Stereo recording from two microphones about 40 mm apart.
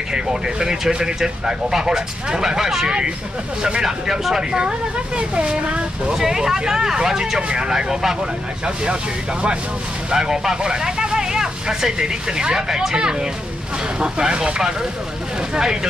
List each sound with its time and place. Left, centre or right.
0.1 s speech: centre
6.1 s speech: centre
10.1 s speech: centre